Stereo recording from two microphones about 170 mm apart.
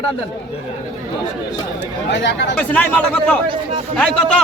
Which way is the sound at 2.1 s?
90° left.